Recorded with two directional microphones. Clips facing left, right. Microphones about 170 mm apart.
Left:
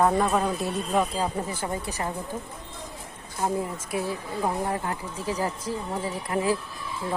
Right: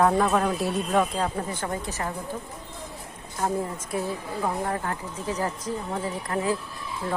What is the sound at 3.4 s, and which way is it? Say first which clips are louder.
A woman's voice: even; 15° left (ahead or behind).